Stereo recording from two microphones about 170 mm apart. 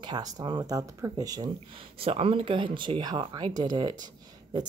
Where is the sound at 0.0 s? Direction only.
25° right (ahead or behind).